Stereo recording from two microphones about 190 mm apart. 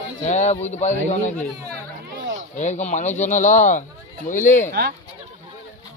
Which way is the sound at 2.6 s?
40° left (ahead or behind).